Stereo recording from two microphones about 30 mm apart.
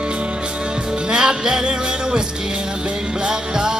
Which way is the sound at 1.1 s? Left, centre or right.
Right.